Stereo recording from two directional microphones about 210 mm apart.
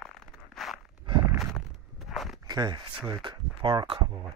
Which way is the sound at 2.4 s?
20° right (ahead or behind).